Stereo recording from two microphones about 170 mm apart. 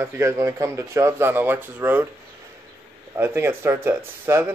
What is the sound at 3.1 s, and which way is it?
Speech, 15° right (ahead or behind).